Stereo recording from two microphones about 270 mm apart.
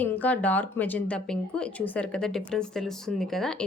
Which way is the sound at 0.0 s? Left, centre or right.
Centre.